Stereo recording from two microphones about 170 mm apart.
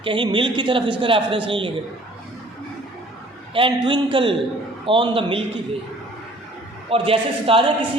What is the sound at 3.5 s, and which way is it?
A man's voice, 30° right (ahead or behind).